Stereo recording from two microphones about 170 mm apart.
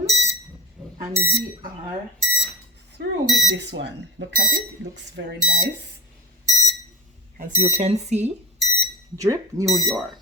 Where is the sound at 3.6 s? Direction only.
90° right.